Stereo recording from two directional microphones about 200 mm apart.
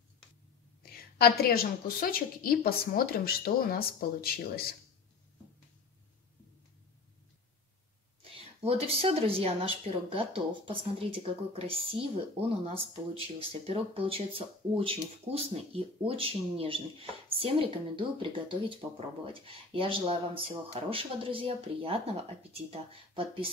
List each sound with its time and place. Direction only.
0.8 s a woman's voice: 50° left (ahead or behind)
8.2 s speech: 30° right (ahead or behind)